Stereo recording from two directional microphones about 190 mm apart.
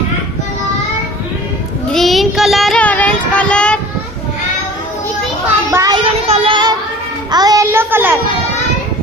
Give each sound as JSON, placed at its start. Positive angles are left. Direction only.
{"t": 1.9, "sound": "child singing", "side_deg": 0}
{"t": 5.7, "sound": "a sound", "side_deg": -15}
{"t": 6.1, "sound": "child singing", "side_deg": -30}
{"t": 7.3, "sound": "speech", "side_deg": -20}